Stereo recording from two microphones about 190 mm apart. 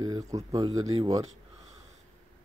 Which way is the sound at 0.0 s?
20° right (ahead or behind).